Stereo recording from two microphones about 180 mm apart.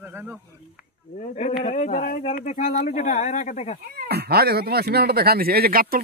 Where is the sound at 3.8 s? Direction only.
55° right (ahead or behind).